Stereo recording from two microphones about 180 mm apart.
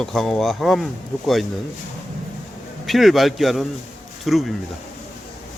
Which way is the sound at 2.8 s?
Centre (ahead or behind).